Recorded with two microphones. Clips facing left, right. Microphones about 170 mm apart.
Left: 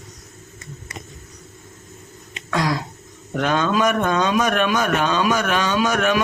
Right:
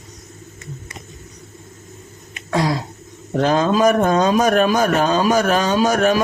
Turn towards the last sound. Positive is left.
turn(degrees=-35)  # may be behind; listen again after turning